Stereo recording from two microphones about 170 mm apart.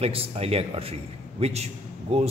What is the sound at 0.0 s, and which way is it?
Speech, 35° right (ahead or behind).